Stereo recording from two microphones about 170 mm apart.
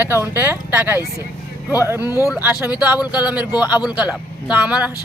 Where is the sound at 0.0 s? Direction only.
10° right (ahead or behind).